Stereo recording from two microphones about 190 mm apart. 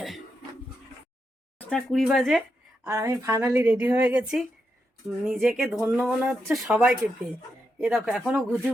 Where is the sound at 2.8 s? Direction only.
15° right (ahead or behind).